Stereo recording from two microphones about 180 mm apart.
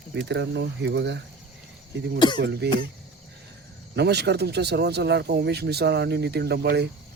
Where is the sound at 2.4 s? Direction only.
65° right (ahead or behind).